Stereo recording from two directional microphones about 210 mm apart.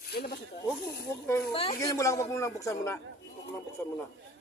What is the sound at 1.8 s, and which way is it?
A man's voice, 15° left (ahead or behind).